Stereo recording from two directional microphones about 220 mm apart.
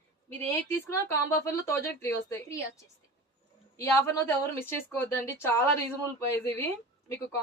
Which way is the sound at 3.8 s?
10° left (ahead or behind).